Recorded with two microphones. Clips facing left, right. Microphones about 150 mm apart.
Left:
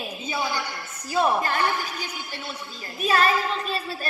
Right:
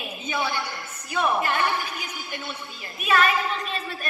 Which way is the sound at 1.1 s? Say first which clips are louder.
Left 2 dB; 35° left (ahead or behind).